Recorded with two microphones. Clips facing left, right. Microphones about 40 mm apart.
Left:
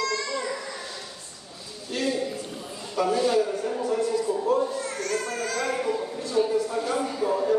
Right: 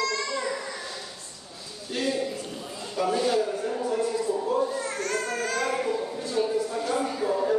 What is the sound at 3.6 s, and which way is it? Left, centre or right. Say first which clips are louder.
Music: left 1 dB; centre.